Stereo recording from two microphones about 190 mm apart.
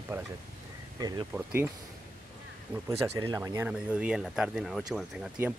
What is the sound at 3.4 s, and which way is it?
Speech, 10° right (ahead or behind).